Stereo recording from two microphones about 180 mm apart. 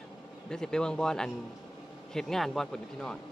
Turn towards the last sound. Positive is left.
turn(degrees=5)  # may be behind; listen again after turning